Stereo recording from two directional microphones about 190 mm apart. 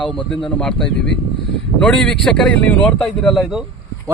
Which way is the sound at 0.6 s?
5° left (ahead or behind).